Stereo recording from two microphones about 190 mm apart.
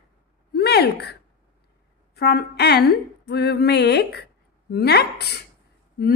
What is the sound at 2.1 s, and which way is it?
A woman's voice, 60° left (ahead or behind).